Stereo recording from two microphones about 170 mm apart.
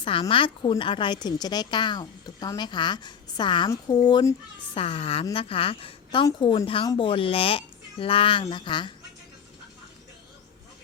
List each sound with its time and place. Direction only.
0.0 s a woman's voice: 30° left (ahead or behind)
4.8 s a woman's voice: 35° left (ahead or behind)